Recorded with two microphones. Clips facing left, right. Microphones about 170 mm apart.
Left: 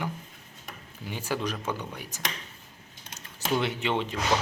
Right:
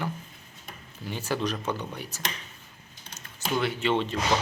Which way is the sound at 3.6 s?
20° left (ahead or behind).